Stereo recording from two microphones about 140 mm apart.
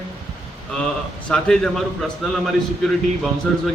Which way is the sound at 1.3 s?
5° left (ahead or behind).